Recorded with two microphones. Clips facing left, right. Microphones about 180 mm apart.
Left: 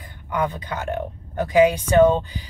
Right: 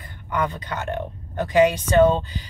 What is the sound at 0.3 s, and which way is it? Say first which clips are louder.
Speech: left 1 dB; 10° left (ahead or behind).